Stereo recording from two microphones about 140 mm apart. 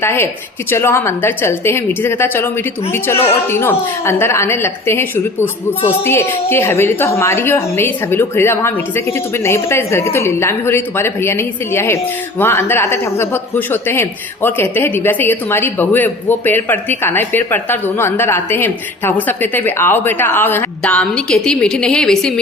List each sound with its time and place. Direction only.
0.0 s speech: 20° left (ahead or behind)